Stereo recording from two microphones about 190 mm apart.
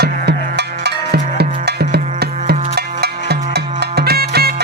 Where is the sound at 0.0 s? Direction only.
60° right (ahead or behind).